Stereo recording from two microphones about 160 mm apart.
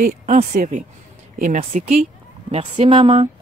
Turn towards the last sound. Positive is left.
turn(degrees=-35)  # may be behind; listen again after turning